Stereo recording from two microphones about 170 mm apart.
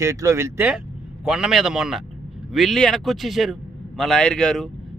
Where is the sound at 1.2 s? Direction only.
5° right (ahead or behind).